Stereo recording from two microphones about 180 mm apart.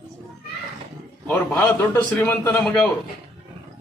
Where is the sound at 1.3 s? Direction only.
10° left (ahead or behind).